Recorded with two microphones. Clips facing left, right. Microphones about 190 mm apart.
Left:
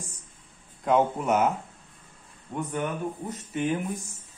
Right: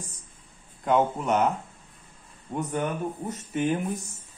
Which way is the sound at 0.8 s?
5° left (ahead or behind).